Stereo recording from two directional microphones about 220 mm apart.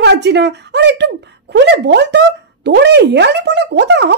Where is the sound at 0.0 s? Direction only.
50° right (ahead or behind).